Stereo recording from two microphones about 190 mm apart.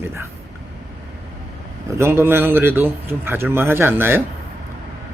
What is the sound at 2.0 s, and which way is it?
A man's voice, 10° right (ahead or behind).